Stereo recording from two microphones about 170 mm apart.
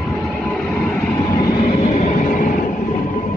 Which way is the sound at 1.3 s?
25° left (ahead or behind).